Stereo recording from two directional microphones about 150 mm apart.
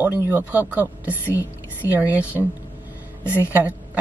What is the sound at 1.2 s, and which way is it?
Speech, 20° left (ahead or behind).